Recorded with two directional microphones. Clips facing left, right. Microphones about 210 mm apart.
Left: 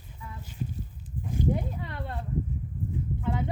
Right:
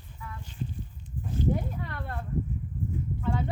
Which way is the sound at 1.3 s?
20° left (ahead or behind).